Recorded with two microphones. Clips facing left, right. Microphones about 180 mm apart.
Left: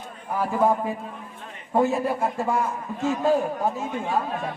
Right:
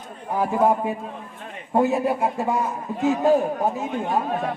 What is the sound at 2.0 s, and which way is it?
A man's voice, 15° right (ahead or behind).